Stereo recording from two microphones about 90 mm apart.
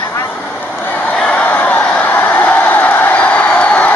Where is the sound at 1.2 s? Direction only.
15° left (ahead or behind).